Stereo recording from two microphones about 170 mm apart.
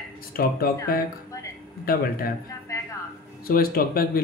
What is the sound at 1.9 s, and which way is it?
Speech, 60° left (ahead or behind).